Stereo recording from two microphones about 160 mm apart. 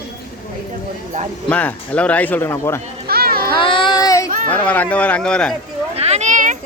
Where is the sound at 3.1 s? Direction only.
70° right (ahead or behind).